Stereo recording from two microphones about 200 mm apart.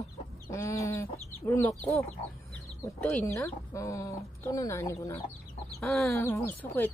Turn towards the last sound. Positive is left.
turn(degrees=10)  # may be behind; listen again after turning